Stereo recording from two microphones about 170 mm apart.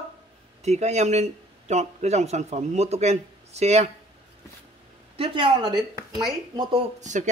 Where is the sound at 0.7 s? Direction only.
40° right (ahead or behind).